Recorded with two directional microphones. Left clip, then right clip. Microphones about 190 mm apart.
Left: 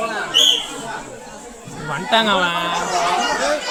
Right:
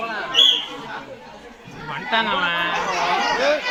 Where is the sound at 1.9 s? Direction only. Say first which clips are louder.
Left 4 dB; 80° left.